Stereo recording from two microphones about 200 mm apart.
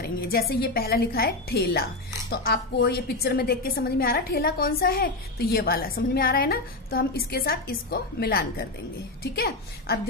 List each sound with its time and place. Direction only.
0.0 s a woman's voice: 50° left (ahead or behind)